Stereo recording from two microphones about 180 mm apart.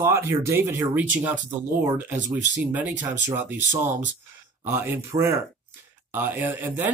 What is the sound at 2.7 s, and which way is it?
Speech, 10° right (ahead or behind).